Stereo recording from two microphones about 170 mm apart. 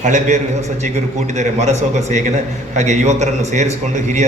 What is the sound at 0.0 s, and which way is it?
A man's voice, 45° right (ahead or behind).